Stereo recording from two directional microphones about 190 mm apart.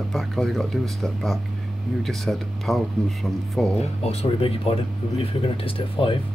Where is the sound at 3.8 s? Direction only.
35° left (ahead or behind).